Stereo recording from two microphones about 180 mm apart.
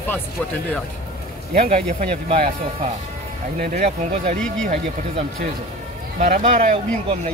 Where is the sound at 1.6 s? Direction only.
35° right (ahead or behind).